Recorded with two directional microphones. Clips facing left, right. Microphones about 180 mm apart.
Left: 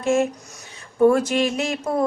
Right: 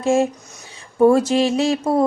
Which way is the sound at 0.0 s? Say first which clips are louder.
Right 2 dB; 30° right (ahead or behind).